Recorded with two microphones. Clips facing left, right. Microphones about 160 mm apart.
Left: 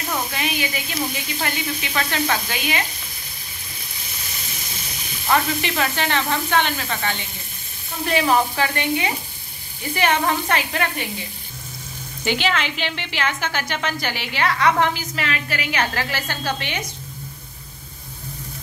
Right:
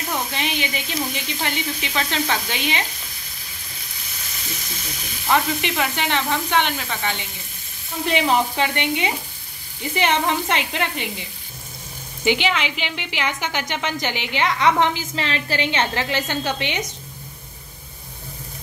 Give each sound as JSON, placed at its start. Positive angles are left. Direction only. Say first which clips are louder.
{"t": 0.3, "sound": "a woman's voice", "louder": "even", "side_deg": -25}
{"t": 5.3, "sound": "a woman's voice", "louder": "even", "side_deg": -15}
{"t": 12.3, "sound": "a woman's voice", "louder": "right 2 dB", "side_deg": -15}